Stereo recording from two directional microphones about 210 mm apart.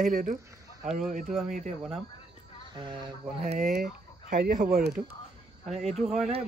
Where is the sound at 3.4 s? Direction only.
35° right (ahead or behind).